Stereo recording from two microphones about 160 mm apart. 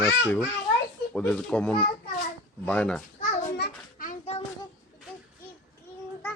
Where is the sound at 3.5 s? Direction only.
75° left (ahead or behind).